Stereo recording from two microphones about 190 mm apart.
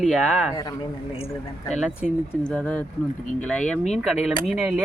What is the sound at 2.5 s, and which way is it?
Speech, 5° left (ahead or behind).